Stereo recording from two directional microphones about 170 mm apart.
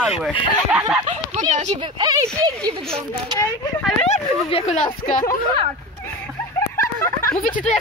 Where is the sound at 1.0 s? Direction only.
45° right (ahead or behind).